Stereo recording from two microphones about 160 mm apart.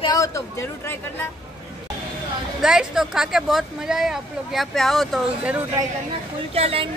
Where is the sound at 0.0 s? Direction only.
20° left (ahead or behind).